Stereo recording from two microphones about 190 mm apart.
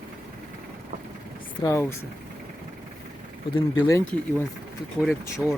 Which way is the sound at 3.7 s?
15° left (ahead or behind).